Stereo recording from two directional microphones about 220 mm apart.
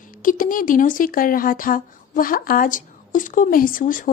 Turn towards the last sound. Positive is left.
turn(degrees=40)  # may be behind; listen again after turning